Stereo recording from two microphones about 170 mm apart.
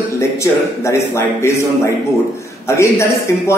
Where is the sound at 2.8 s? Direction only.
15° left (ahead or behind).